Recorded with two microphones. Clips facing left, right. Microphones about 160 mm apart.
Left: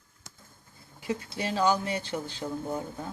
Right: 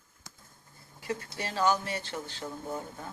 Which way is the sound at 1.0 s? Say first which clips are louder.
Left 3 dB; 15° left (ahead or behind).